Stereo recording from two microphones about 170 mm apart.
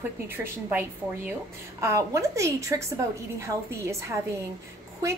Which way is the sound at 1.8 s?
15° right (ahead or behind).